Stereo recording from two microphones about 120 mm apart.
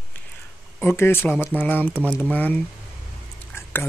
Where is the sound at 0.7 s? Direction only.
20° left (ahead or behind).